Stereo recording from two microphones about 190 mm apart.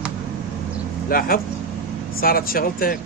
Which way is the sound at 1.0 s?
50° left (ahead or behind).